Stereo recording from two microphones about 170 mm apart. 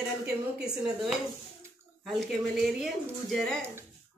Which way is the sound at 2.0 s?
Centre (ahead or behind).